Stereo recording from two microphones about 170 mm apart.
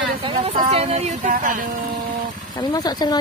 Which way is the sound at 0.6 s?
35° right (ahead or behind).